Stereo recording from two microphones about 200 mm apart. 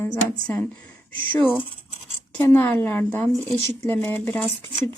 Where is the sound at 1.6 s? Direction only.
25° left (ahead or behind).